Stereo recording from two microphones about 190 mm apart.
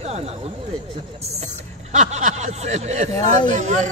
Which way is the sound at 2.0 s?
40° right (ahead or behind).